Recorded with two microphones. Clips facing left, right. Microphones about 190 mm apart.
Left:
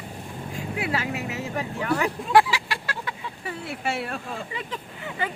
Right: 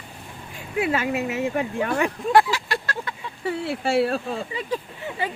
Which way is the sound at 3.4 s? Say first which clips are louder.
Right 6 dB; 30° right (ahead or behind).